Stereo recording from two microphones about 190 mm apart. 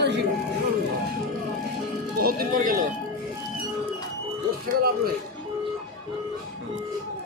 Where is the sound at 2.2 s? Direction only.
50° right (ahead or behind).